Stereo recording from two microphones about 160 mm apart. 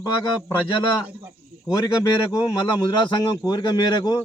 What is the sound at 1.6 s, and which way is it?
A man's voice, 25° left (ahead or behind).